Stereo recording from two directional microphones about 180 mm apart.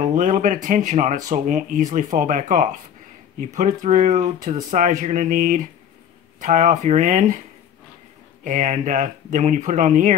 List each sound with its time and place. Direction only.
0.0 s speech: 45° right (ahead or behind)
8.5 s speech: 40° right (ahead or behind)